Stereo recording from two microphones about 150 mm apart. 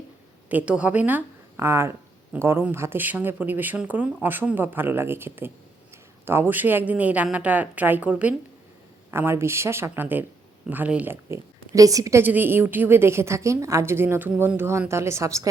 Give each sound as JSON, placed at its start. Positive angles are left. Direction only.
{"t": 0.4, "sound": "a woman's voice", "side_deg": -10}